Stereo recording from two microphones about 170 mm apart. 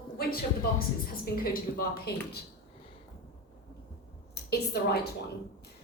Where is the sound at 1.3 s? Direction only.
60° left (ahead or behind).